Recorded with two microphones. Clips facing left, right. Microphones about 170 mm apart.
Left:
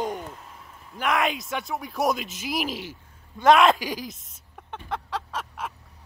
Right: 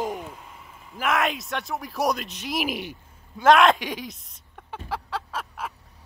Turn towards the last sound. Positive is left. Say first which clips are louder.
# even
turn(degrees=0)  # may be behind; listen again after turning